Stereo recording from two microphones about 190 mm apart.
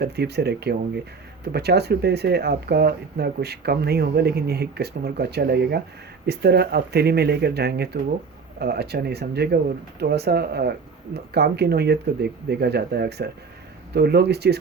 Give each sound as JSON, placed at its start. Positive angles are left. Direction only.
{"t": 0.0, "sound": "speech", "side_deg": -60}